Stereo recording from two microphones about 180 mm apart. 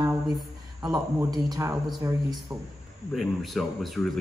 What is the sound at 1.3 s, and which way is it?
Speech, 20° right (ahead or behind).